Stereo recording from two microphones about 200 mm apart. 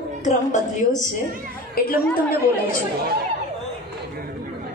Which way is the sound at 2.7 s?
50° right (ahead or behind).